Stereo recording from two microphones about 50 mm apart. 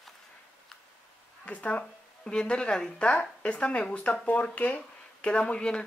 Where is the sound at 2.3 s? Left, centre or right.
Centre.